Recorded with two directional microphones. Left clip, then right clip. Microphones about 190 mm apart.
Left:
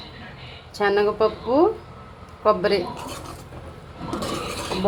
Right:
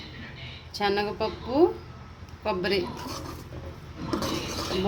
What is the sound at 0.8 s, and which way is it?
A woman's voice, 10° left (ahead or behind).